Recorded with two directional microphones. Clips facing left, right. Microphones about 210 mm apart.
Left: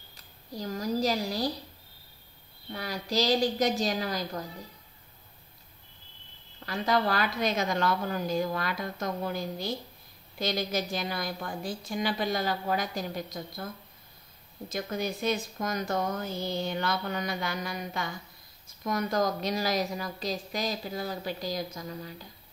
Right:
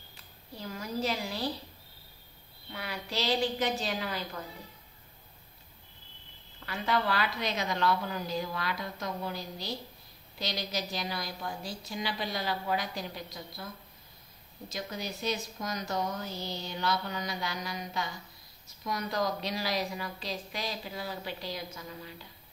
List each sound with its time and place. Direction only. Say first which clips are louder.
0.1 s speech: left 7 dB; 40° left (ahead or behind)
2.7 s a woman's voice: left 6 dB; 40° left (ahead or behind)
6.6 s speech: left 4 dB; 40° left (ahead or behind)
14.7 s a woman's voice: left 6 dB; 50° left (ahead or behind)